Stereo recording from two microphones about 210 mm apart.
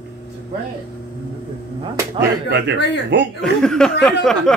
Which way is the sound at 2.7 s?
55° left (ahead or behind).